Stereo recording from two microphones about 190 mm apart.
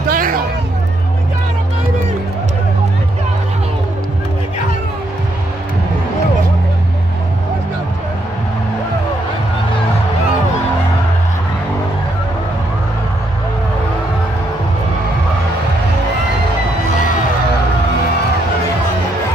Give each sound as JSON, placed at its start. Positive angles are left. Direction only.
{"t": 0.1, "sound": "hubbub", "side_deg": -50}